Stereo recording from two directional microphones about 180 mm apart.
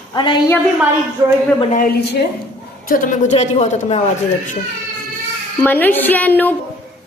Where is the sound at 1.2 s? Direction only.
25° right (ahead or behind).